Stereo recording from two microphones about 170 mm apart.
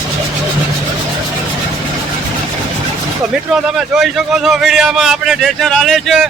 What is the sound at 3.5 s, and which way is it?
A man's voice, 5° right (ahead or behind).